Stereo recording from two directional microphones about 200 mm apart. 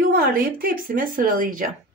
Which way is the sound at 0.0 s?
45° right (ahead or behind).